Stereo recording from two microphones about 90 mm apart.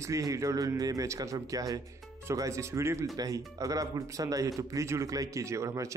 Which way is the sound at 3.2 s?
40° right (ahead or behind).